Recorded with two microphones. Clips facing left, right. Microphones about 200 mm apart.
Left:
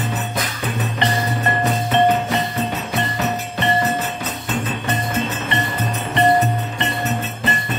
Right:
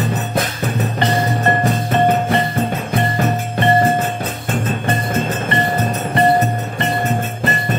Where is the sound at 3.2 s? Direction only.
50° right (ahead or behind).